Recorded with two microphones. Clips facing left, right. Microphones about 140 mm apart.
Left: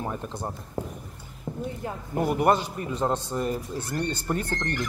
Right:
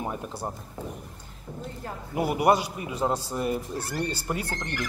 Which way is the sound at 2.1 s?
10° right (ahead or behind).